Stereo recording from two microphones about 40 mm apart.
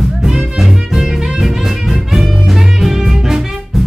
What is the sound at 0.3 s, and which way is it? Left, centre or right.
Music, centre.